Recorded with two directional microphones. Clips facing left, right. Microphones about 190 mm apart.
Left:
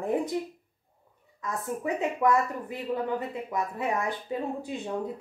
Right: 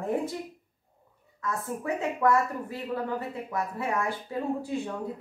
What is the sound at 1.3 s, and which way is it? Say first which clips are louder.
A woman's voice: even; 15° left (ahead or behind).